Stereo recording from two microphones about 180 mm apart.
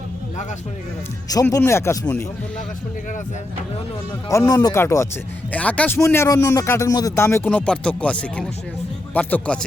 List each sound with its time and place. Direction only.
1.3 s speech: 20° left (ahead or behind)
4.3 s speech: 20° left (ahead or behind)